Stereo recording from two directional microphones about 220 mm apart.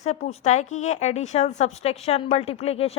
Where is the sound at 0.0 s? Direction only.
30° left (ahead or behind).